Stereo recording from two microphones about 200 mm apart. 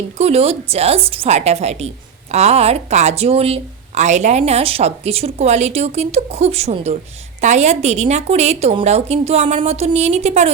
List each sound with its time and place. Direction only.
0.2 s a woman's voice: 30° right (ahead or behind)